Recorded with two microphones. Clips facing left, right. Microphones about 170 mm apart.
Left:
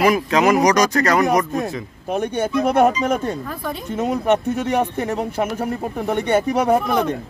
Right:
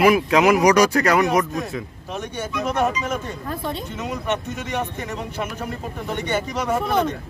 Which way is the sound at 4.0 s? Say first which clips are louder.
Left 10 dB; 55° left (ahead or behind).